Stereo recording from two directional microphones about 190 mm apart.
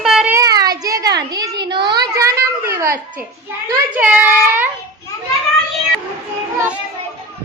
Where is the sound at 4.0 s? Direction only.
10° right (ahead or behind).